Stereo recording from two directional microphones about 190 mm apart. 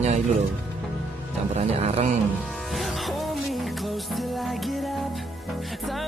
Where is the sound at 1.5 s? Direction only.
35° right (ahead or behind).